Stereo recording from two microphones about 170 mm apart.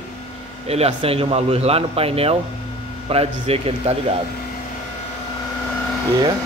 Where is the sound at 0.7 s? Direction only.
35° right (ahead or behind).